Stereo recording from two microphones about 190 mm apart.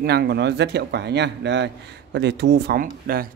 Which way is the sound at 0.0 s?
55° right (ahead or behind).